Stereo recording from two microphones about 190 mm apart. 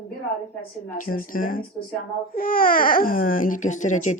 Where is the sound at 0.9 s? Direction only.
45° left (ahead or behind).